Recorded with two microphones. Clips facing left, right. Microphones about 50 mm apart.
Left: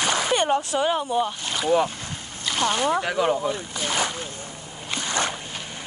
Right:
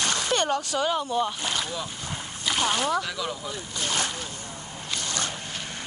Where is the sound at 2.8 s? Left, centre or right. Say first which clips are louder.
Left 5 dB; left.